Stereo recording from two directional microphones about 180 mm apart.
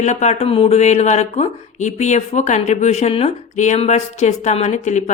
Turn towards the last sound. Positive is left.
turn(degrees=40)  # may be behind; listen again after turning